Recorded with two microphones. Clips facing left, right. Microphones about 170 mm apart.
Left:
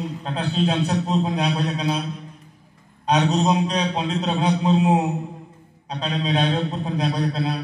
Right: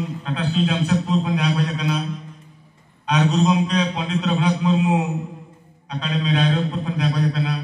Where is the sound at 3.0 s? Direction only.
30° left (ahead or behind).